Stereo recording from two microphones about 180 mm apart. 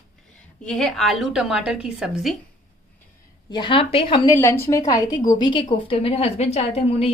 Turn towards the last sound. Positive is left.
turn(degrees=35)  # may be behind; listen again after turning